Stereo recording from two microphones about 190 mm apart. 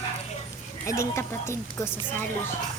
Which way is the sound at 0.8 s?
15° left (ahead or behind).